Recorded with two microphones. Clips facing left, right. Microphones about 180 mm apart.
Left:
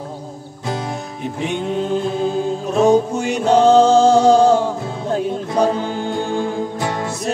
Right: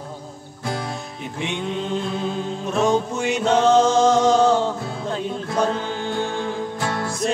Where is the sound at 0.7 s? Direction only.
20° left (ahead or behind).